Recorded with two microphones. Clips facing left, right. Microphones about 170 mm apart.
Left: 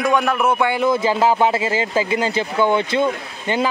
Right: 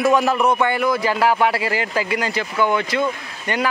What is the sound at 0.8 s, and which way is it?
Speech, 25° left (ahead or behind).